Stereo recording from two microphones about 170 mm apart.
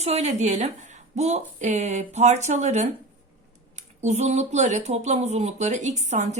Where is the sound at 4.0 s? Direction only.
40° right (ahead or behind).